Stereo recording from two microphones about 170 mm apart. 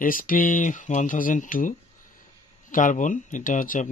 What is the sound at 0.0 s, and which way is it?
Speech, 55° left (ahead or behind).